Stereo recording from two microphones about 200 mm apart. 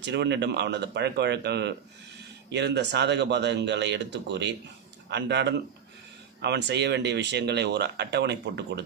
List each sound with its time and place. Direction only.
0.0 s speech: 60° right (ahead or behind)